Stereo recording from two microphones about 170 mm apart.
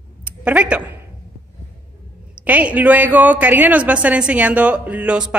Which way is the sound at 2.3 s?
10° right (ahead or behind).